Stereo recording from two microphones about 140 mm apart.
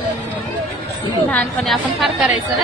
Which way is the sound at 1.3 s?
5° left (ahead or behind).